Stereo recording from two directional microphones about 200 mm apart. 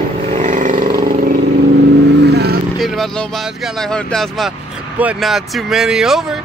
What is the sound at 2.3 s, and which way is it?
Vehicle, 55° right (ahead or behind).